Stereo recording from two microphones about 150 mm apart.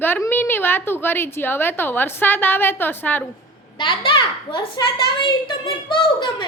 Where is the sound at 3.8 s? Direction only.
35° left (ahead or behind).